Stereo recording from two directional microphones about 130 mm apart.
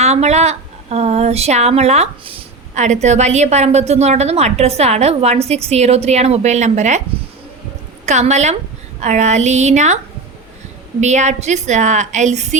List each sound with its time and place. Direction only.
0.0 s a woman's voice: 55° right (ahead or behind)
2.7 s a woman's voice: 65° right (ahead or behind)
8.0 s a woman's voice: 60° right (ahead or behind)
11.0 s a woman's voice: 60° right (ahead or behind)